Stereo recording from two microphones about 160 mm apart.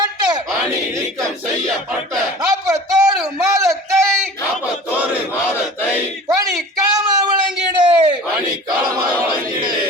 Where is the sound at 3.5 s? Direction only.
20° right (ahead or behind).